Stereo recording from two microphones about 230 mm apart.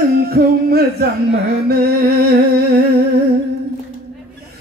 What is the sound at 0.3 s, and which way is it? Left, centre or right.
Music, right.